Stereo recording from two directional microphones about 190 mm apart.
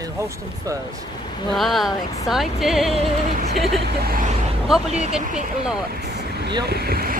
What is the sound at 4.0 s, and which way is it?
Speech, 50° right (ahead or behind).